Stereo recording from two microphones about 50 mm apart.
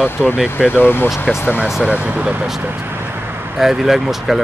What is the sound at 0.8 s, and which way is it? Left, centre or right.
Speech, left.